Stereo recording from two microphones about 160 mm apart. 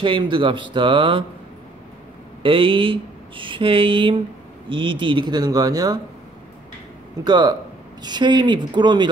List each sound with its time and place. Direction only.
0.0 s speech: 30° right (ahead or behind)
2.4 s speech: 35° right (ahead or behind)
7.2 s speech: 25° right (ahead or behind)